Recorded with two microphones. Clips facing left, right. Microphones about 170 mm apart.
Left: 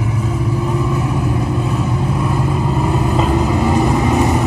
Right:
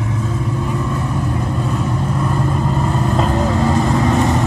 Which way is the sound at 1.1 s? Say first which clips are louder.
Left 2 dB; 5° left (ahead or behind).